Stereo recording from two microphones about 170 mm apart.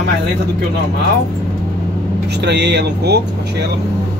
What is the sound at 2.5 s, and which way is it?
Speech, 85° right.